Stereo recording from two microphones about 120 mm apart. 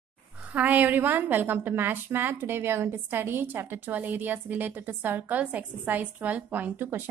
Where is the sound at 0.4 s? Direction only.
15° right (ahead or behind).